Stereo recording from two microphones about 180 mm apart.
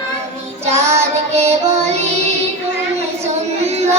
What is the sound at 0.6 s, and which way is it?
Child singing, 40° right (ahead or behind).